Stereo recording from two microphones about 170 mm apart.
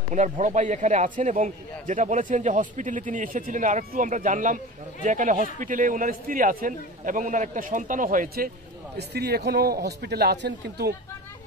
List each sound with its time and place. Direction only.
0.1 s a man's voice: 45° right (ahead or behind)
8.9 s a man's voice: 75° right (ahead or behind)